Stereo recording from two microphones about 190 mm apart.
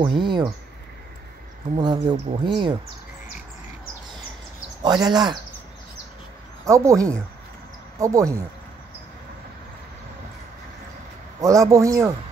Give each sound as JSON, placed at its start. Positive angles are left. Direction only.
{"t": 0.0, "sound": "speech", "side_deg": -25}
{"t": 1.8, "sound": "speech", "side_deg": -25}
{"t": 4.8, "sound": "speech", "side_deg": -20}
{"t": 6.6, "sound": "a man's voice", "side_deg": -15}
{"t": 11.4, "sound": "a man's voice", "side_deg": -15}